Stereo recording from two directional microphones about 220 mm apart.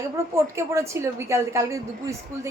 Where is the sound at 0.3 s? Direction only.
10° right (ahead or behind).